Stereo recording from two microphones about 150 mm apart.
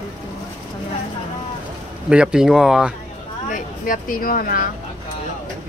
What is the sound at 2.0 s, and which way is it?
Speech, 5° right (ahead or behind).